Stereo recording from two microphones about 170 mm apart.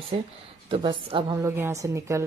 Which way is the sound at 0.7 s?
30° right (ahead or behind).